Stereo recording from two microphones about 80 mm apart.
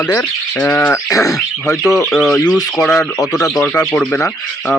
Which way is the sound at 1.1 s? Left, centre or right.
Left.